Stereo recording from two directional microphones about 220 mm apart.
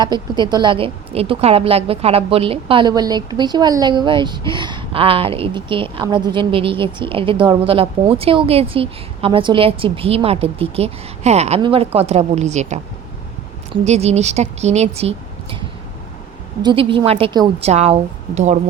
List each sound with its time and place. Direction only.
0.0 s a woman's voice: 20° right (ahead or behind)
13.8 s speech: 30° right (ahead or behind)
16.6 s a woman's voice: 20° right (ahead or behind)